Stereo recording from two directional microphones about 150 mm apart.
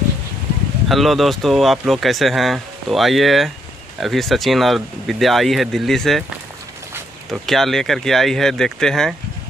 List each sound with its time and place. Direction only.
0.8 s speech: centre (ahead or behind)
7.2 s speech: centre (ahead or behind)